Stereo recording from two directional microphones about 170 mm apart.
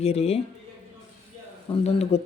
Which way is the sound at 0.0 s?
35° left (ahead or behind).